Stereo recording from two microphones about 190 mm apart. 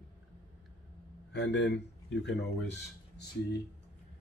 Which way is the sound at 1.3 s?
65° left (ahead or behind).